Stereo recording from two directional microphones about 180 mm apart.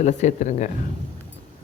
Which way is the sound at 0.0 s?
40° left (ahead or behind).